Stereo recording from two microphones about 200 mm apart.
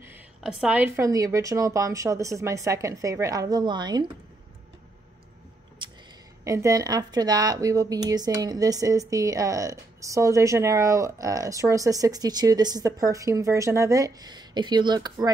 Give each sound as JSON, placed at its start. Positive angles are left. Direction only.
{"t": 0.0, "sound": "speech", "side_deg": -5}
{"t": 6.4, "sound": "speech", "side_deg": -15}